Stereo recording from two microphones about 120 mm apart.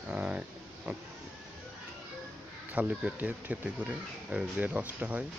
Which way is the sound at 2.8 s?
10° right (ahead or behind).